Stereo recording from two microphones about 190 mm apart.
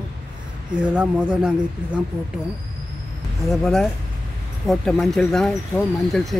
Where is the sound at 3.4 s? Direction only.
Centre (ahead or behind).